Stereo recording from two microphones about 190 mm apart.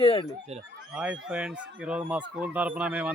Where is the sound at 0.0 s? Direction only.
30° left (ahead or behind).